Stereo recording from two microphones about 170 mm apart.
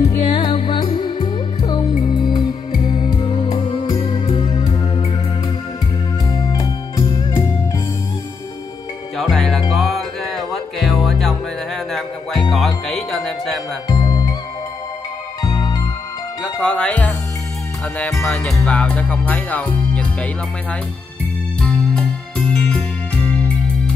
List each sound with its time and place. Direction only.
0.0 s music: 40° left (ahead or behind)
6.3 s music: 20° left (ahead or behind)
9.2 s music: centre (ahead or behind)
13.8 s music: 20° left (ahead or behind)
15.4 s music: 25° left (ahead or behind)
16.6 s speech: 5° left (ahead or behind)
17.9 s music: 5° left (ahead or behind)
21.5 s music: 5° left (ahead or behind)